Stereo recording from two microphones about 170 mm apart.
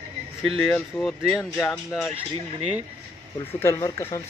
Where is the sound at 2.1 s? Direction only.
40° right (ahead or behind).